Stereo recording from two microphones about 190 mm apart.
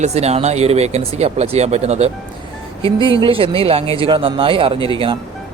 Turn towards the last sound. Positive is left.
turn(degrees=-30)  # may be behind; listen again after turning